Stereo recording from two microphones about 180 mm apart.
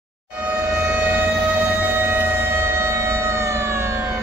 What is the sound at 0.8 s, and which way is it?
Music, 10° right (ahead or behind).